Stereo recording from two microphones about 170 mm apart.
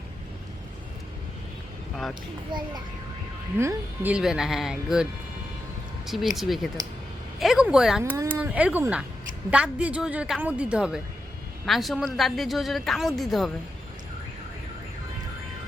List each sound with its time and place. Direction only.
2.5 s a child's voice: 25° right (ahead or behind)
3.6 s a woman's voice: 15° right (ahead or behind)
6.1 s a woman's voice: centre (ahead or behind)
8.1 s a woman's voice: 15° right (ahead or behind)